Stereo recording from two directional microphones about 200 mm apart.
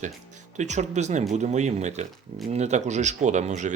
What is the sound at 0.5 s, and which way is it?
Speech, 35° right (ahead or behind).